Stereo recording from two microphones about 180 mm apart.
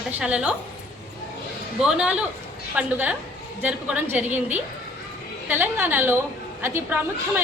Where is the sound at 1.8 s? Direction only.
5° right (ahead or behind).